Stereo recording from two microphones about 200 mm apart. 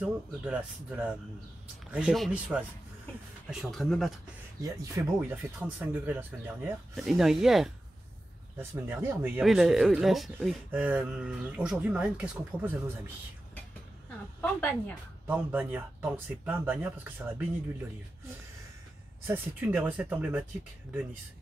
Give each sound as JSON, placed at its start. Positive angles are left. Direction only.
{"t": 0.0, "sound": "speech", "side_deg": -5}
{"t": 4.6, "sound": "speech", "side_deg": -15}
{"t": 14.4, "sound": "speech", "side_deg": 10}
{"t": 15.2, "sound": "speech", "side_deg": -10}
{"t": 19.2, "sound": "speech", "side_deg": -10}